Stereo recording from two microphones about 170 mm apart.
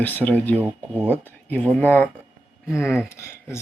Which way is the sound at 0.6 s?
10° right (ahead or behind).